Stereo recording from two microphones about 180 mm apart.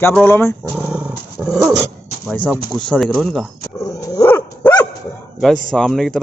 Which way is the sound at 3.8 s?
20° left (ahead or behind).